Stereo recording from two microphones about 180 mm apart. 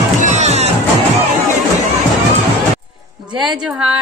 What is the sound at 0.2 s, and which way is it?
Music, 40° right (ahead or behind).